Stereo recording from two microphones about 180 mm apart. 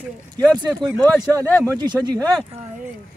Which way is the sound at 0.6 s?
20° right (ahead or behind).